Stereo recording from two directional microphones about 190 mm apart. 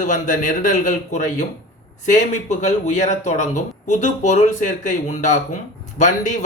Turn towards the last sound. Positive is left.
turn(degrees=40)  # may be behind; listen again after turning